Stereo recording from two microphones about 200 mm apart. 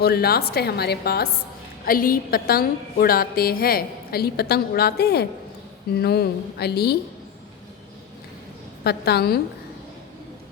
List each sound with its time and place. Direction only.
0.0 s a woman's voice: 50° left (ahead or behind)
8.8 s a woman's voice: 55° left (ahead or behind)